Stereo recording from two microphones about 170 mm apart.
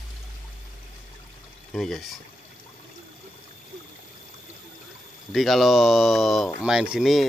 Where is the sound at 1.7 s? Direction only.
Centre (ahead or behind).